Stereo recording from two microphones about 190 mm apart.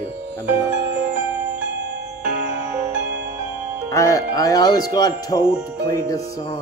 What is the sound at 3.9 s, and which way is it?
Music, 15° left (ahead or behind).